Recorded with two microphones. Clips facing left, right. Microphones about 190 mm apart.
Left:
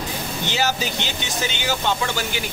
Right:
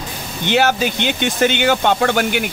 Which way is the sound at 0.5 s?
60° right (ahead or behind).